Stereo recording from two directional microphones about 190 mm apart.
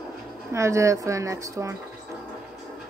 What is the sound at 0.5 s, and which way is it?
A woman's voice, 15° right (ahead or behind).